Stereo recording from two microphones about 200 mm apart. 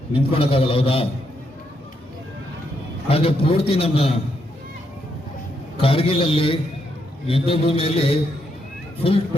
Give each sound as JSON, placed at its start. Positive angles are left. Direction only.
{"t": 0.1, "sound": "a man's voice", "side_deg": 30}
{"t": 3.1, "sound": "a man's voice", "side_deg": 30}
{"t": 5.7, "sound": "a man's voice", "side_deg": 30}